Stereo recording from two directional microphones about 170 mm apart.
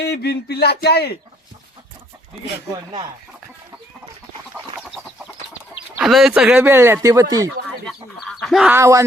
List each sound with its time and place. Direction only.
0.0 s speech: 70° left (ahead or behind)
6.0 s speech: centre (ahead or behind); by 7.5 s 20° right (ahead or behind)
7.9 s chicken: centre (ahead or behind)
8.7 s speech: 20° right (ahead or behind)